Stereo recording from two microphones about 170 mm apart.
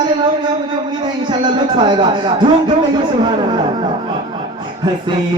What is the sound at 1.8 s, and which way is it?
Speech, 25° right (ahead or behind).